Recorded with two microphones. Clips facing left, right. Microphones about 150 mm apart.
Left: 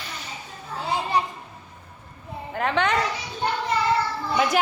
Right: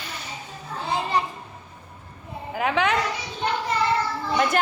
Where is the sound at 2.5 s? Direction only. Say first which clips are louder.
Even; 5° right (ahead or behind).